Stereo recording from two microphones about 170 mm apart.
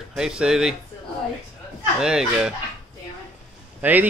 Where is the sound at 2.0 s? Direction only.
5° right (ahead or behind).